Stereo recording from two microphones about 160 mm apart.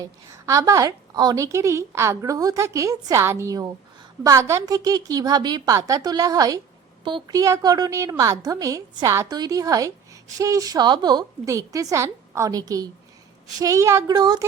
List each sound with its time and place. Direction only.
0.0 s a woman's voice: 20° right (ahead or behind)